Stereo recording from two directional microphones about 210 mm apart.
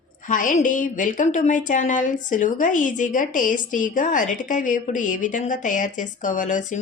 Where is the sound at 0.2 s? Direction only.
40° left (ahead or behind).